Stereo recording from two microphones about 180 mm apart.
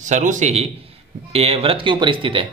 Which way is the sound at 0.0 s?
45° right (ahead or behind).